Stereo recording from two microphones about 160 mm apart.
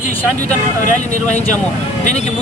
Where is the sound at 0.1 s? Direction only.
10° left (ahead or behind).